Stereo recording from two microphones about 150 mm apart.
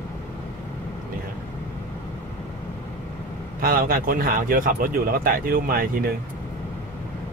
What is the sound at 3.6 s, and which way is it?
Speech, 75° right (ahead or behind).